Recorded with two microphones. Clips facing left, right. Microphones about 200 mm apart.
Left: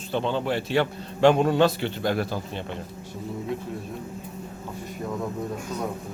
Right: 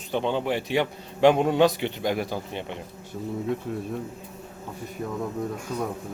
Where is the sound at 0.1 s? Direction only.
15° right (ahead or behind).